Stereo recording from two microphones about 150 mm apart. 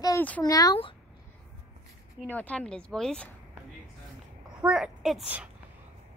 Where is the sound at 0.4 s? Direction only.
25° left (ahead or behind).